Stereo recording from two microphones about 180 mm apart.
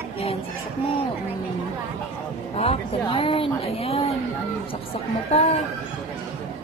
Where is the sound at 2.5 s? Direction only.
35° left (ahead or behind).